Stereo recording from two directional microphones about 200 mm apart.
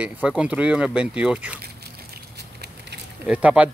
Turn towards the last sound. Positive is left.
turn(degrees=-5)  # may be behind; listen again after turning